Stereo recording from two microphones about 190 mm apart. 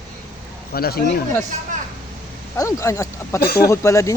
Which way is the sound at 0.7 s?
55° left (ahead or behind).